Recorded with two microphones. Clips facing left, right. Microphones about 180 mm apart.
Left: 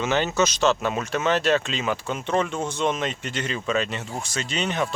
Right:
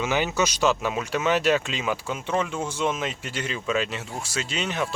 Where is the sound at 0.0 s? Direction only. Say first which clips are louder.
Left 2 dB; 10° right (ahead or behind).